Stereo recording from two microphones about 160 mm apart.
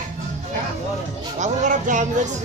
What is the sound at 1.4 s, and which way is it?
Music, 50° right (ahead or behind).